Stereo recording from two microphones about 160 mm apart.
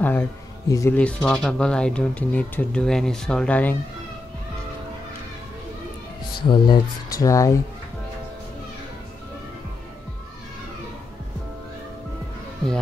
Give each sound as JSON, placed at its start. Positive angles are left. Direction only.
{"t": 0.0, "sound": "a sound", "side_deg": 10}
{"t": 0.9, "sound": "speech", "side_deg": 5}
{"t": 6.4, "sound": "speech", "side_deg": 30}